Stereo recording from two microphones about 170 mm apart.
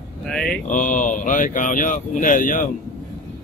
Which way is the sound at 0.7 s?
50° left (ahead or behind).